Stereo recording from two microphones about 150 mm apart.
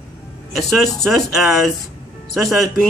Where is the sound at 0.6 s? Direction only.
Centre (ahead or behind).